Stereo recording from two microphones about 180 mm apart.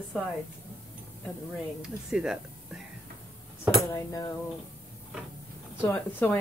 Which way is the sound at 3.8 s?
20° left (ahead or behind).